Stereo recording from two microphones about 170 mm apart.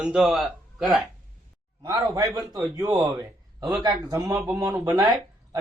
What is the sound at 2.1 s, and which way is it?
Speech, 20° right (ahead or behind).